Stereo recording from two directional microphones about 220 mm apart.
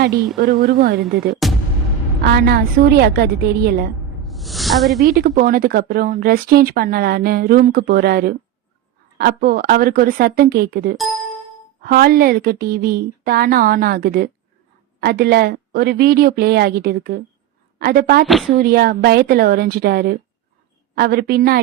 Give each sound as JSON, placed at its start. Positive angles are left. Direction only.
{"t": 0.3, "sound": "speech", "side_deg": -40}
{"t": 1.0, "sound": "speech", "side_deg": 0}
{"t": 2.2, "sound": "speech", "side_deg": -45}
{"t": 4.2, "sound": "snake", "side_deg": 0}
{"t": 5.0, "sound": "a woman's voice", "side_deg": -45}